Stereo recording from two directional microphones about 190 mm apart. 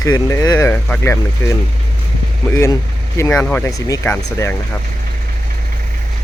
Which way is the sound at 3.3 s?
5° left (ahead or behind).